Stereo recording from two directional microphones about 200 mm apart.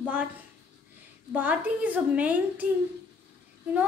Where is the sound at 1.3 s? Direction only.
10° right (ahead or behind).